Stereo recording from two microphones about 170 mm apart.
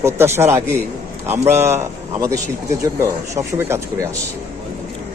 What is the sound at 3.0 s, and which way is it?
Speech, 15° right (ahead or behind).